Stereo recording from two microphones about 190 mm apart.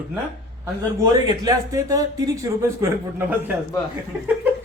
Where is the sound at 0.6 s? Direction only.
20° right (ahead or behind).